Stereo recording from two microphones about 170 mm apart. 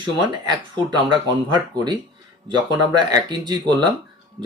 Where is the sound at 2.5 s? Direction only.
25° right (ahead or behind).